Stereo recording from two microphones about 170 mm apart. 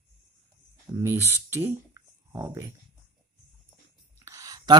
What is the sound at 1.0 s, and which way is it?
Speech, 15° right (ahead or behind).